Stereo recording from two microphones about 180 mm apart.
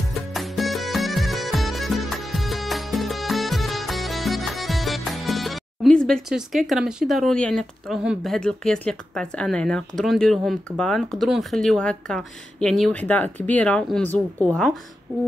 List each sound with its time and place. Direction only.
0.3 s music: centre (ahead or behind)